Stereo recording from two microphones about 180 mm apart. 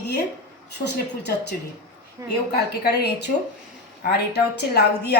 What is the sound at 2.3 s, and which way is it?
A woman's voice, 65° left (ahead or behind).